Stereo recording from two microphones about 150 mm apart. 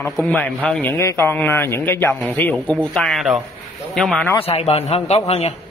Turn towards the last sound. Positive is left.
turn(degrees=45)  # may be behind; listen again after turning